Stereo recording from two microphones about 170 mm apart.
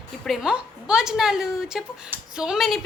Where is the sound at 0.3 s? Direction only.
5° right (ahead or behind).